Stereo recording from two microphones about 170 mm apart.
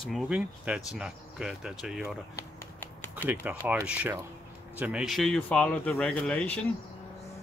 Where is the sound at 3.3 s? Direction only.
10° right (ahead or behind); by 6.6 s 5° left (ahead or behind).